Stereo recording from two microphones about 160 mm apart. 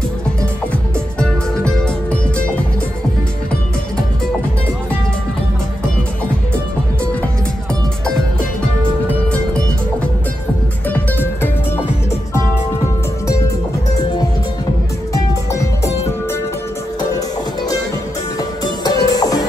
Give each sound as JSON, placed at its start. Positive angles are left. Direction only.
{"t": 10.9, "sound": "music", "side_deg": 10}
{"t": 18.9, "sound": "music", "side_deg": 25}